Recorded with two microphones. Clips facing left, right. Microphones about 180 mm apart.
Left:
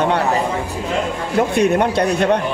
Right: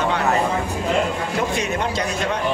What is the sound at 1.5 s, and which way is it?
Speech, 60° left (ahead or behind).